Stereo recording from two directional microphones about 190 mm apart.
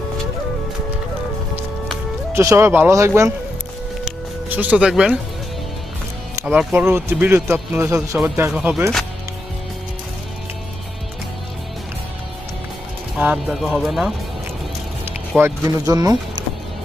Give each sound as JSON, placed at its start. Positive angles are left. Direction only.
{"t": 2.3, "sound": "speech", "side_deg": -15}
{"t": 4.0, "sound": "music", "side_deg": -10}
{"t": 6.3, "sound": "speech", "side_deg": -10}
{"t": 13.1, "sound": "speech", "side_deg": -5}
{"t": 15.4, "sound": "speech", "side_deg": -15}